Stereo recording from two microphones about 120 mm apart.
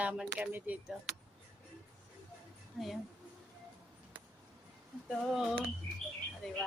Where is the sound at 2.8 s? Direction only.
Centre (ahead or behind).